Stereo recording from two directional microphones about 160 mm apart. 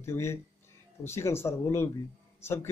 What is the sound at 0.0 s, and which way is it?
A man's voice, 15° left (ahead or behind).